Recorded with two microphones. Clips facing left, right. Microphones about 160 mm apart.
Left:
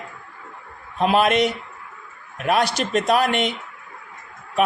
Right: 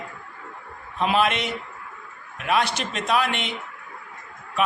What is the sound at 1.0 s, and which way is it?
A man's voice, 45° left (ahead or behind).